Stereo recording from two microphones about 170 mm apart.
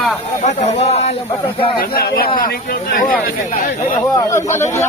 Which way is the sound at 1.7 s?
65° left (ahead or behind).